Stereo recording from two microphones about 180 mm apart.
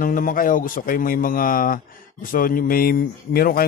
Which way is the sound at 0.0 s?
50° left (ahead or behind).